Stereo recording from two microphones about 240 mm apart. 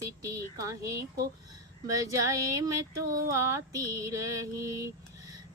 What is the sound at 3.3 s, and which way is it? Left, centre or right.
Female singing, centre.